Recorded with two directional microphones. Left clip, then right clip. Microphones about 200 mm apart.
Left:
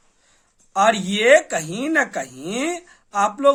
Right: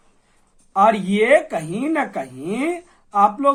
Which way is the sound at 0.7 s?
30° left (ahead or behind).